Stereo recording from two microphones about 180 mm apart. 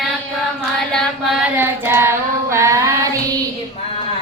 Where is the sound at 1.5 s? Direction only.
10° right (ahead or behind).